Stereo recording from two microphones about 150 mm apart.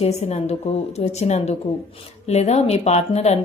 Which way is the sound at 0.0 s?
45° left (ahead or behind).